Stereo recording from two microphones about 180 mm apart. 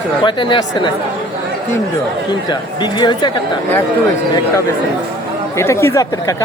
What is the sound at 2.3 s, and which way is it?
Speech, 25° left (ahead or behind).